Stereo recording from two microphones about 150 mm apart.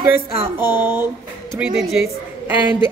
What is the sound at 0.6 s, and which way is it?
Speech, 15° right (ahead or behind).